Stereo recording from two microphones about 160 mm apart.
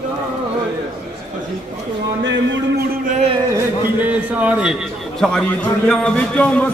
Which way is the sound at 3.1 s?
40° right (ahead or behind).